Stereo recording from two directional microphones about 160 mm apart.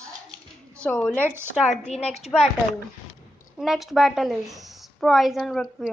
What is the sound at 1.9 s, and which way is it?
Speech, 40° left (ahead or behind).